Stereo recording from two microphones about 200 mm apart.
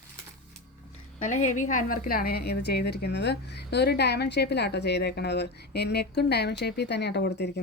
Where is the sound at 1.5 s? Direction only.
40° left (ahead or behind).